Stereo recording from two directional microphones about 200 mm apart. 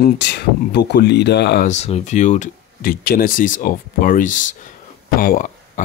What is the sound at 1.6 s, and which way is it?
Speech, 35° left (ahead or behind).